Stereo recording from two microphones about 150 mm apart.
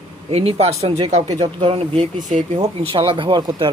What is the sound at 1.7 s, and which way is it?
Speech, 50° right (ahead or behind).